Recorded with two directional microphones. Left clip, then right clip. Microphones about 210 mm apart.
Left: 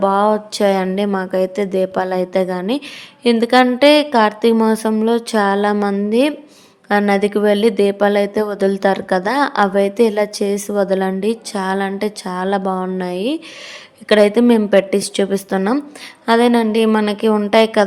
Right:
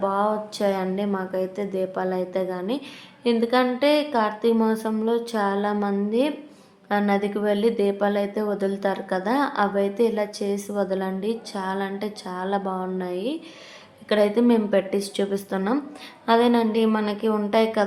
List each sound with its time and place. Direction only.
0.0 s speech: 40° left (ahead or behind)